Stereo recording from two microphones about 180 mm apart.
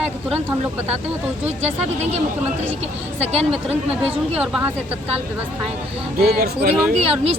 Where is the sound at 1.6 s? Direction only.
35° right (ahead or behind).